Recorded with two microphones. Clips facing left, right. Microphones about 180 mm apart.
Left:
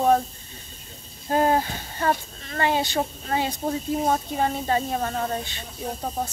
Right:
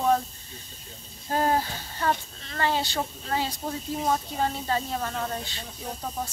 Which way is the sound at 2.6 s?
15° left (ahead or behind).